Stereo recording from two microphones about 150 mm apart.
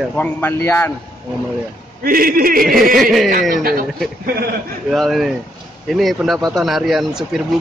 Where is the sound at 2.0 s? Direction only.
75° right (ahead or behind).